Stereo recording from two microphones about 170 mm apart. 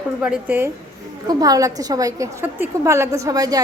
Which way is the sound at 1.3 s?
20° right (ahead or behind).